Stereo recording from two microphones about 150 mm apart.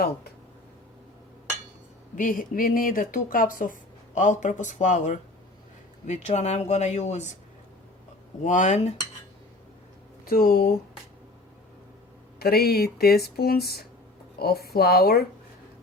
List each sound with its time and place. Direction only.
2.1 s speech: 65° left (ahead or behind)
8.4 s speech: 55° left (ahead or behind)
10.2 s speech: 75° left (ahead or behind)
12.4 s speech: 90° left